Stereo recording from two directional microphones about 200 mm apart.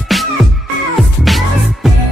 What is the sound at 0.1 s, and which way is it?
Music, centre (ahead or behind).